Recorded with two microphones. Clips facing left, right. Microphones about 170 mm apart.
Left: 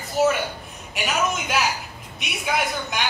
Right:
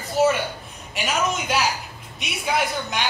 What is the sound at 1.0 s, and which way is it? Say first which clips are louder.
A man's voice: right 1 dB; centre (ahead or behind).